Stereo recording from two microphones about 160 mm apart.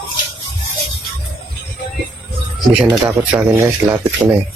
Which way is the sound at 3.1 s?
5° right (ahead or behind).